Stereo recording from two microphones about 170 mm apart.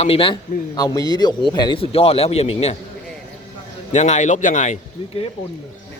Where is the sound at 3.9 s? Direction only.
45° left (ahead or behind).